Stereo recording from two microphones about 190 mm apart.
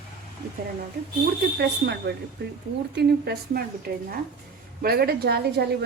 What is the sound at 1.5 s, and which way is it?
A woman's voice, 60° right (ahead or behind).